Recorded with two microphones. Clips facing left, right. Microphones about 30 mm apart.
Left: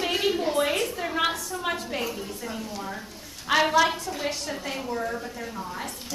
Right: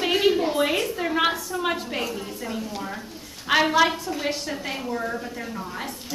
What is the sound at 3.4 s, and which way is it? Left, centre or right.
Speech, centre.